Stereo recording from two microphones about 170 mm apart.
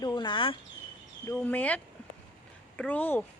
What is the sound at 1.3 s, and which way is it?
Speech, 10° left (ahead or behind).